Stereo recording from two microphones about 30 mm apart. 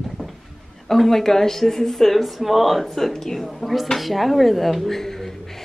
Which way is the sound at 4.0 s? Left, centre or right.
Centre.